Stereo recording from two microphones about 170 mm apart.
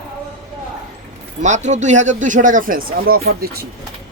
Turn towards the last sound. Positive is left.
turn(degrees=-65)  # may be behind; listen again after turning